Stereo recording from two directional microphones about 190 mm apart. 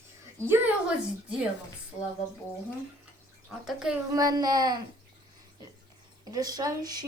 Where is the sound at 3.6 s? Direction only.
5° right (ahead or behind).